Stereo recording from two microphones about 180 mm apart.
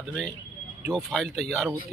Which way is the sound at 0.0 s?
5° left (ahead or behind).